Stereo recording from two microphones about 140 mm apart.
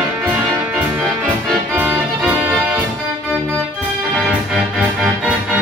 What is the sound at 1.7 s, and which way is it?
Music, 10° right (ahead or behind).